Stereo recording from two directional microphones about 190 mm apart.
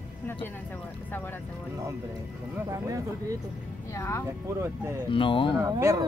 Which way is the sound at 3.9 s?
15° left (ahead or behind).